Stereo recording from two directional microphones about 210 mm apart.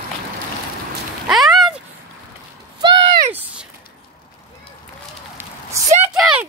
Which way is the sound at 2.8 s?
20° right (ahead or behind).